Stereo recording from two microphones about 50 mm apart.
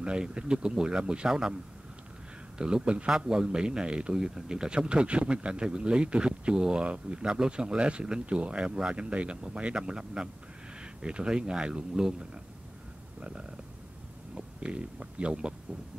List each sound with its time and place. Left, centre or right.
0.0 s a man's voice: centre
2.6 s a man's voice: centre